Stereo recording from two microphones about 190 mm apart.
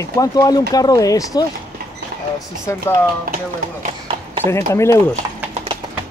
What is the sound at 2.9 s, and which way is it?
Speech, 15° left (ahead or behind).